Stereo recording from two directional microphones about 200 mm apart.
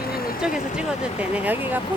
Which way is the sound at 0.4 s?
5° right (ahead or behind).